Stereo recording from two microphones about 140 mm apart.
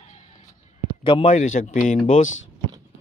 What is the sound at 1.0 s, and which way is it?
Speech, 40° left (ahead or behind).